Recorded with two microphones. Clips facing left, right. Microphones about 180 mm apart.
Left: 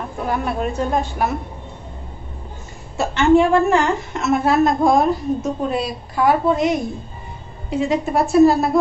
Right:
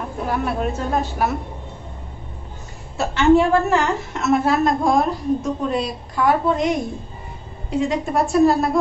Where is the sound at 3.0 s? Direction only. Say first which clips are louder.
Left 1 dB; centre (ahead or behind).